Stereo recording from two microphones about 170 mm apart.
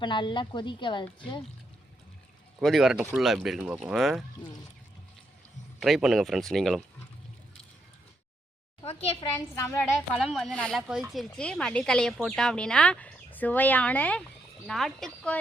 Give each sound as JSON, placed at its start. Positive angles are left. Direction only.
{"t": 0.0, "sound": "speech", "side_deg": 30}
{"t": 2.6, "sound": "speech", "side_deg": 0}
{"t": 5.8, "sound": "speech", "side_deg": 0}
{"t": 8.8, "sound": "a woman's voice", "side_deg": 35}
{"t": 9.6, "sound": "speech", "side_deg": 15}
{"t": 10.2, "sound": "speech", "side_deg": 0}